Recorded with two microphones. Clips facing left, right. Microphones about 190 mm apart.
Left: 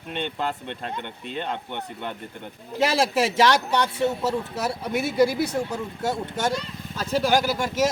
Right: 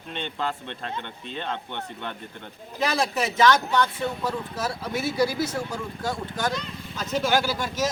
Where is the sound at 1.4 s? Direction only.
10° left (ahead or behind).